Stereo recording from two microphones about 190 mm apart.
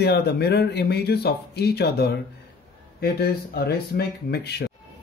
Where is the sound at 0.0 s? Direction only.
60° left (ahead or behind).